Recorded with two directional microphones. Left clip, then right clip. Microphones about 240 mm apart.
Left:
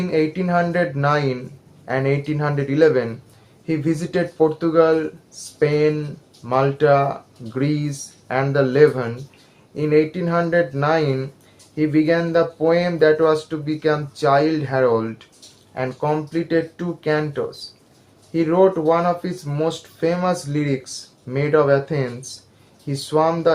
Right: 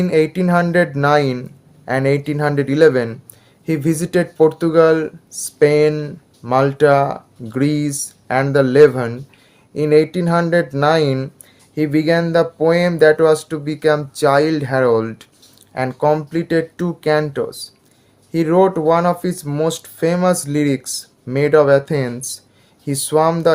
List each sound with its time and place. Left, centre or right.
0.0 s speech: right